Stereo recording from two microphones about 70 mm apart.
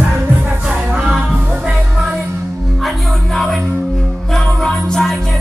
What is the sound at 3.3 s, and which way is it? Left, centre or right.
Music, centre.